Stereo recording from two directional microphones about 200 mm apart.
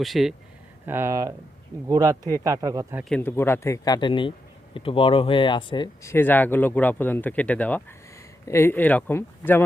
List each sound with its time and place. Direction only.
0.0 s speech: centre (ahead or behind)
0.9 s speech: 10° right (ahead or behind)
3.0 s speech: 5° left (ahead or behind)